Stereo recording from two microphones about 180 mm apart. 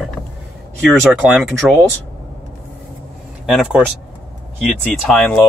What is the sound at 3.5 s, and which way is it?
Speech, centre (ahead or behind).